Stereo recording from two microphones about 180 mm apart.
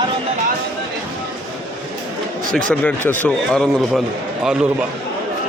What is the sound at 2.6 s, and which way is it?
A man's voice, 10° left (ahead or behind).